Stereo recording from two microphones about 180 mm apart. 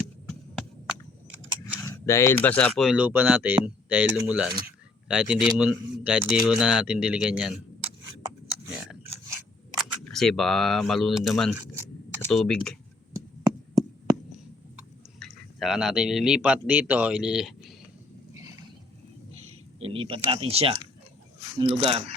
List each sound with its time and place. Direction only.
0.3 s a sound: centre (ahead or behind)
1.9 s speech: 15° left (ahead or behind); by 7.6 s 5° right (ahead or behind)
9.7 s speech: centre (ahead or behind)
15.2 s a man's voice: centre (ahead or behind)
19.4 s speech: 35° right (ahead or behind)